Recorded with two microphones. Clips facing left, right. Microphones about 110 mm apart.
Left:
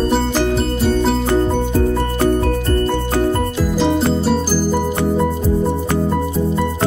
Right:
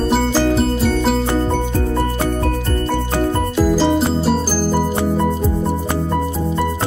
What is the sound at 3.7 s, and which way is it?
Music, 5° right (ahead or behind).